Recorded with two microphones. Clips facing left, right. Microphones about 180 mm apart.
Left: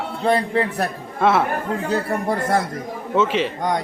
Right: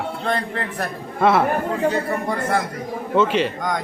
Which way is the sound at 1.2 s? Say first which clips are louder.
Right 1 dB; centre (ahead or behind).